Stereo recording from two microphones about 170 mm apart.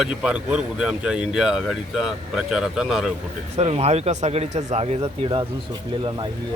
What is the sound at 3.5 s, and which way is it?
Speech, 40° right (ahead or behind).